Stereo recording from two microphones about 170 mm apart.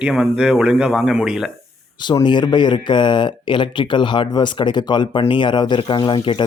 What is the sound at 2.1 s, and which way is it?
Speech, 25° left (ahead or behind).